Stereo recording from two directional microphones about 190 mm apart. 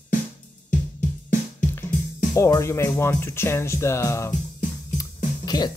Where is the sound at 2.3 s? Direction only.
15° left (ahead or behind).